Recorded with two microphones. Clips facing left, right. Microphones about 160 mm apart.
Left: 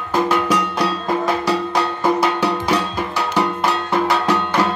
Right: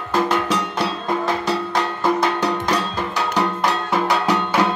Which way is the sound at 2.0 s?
10° left (ahead or behind).